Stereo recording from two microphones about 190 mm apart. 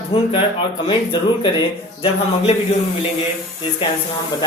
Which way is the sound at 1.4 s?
25° left (ahead or behind).